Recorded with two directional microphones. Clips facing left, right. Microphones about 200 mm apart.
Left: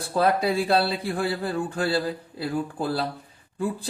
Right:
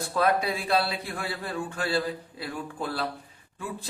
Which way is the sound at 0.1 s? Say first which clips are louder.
Left 4 dB; 35° left (ahead or behind).